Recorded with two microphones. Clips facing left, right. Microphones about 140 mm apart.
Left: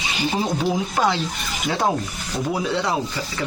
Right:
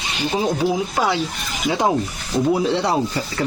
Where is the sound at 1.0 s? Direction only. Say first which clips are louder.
Left 1 dB; 10° right (ahead or behind).